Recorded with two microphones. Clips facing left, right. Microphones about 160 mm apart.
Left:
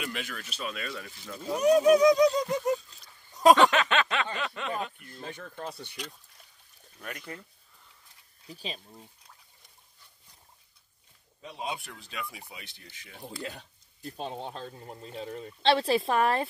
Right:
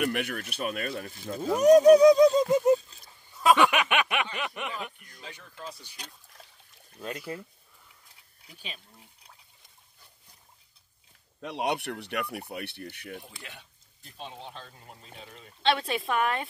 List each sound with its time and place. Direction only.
0.0 s speech: 60° right (ahead or behind)
1.6 s speech: 40° right (ahead or behind); by 3.1 s 25° right (ahead or behind)
3.5 s a sound: 15° right (ahead or behind)
5.2 s speech: 50° left (ahead or behind)
7.0 s speech: 25° right (ahead or behind)
8.5 s speech: 35° left (ahead or behind)
11.4 s speech: 80° right; by 13.2 s 60° right (ahead or behind)
13.2 s speech: 40° left (ahead or behind)